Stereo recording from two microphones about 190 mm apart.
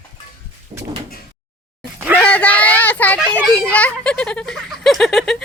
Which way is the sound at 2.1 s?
5° left (ahead or behind).